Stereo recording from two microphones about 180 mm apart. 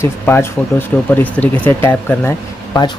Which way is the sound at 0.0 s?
15° left (ahead or behind).